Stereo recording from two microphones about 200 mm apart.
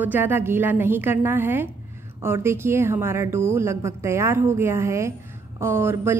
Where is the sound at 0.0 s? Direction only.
10° right (ahead or behind).